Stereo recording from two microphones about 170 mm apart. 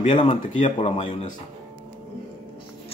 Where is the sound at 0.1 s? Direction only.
30° left (ahead or behind).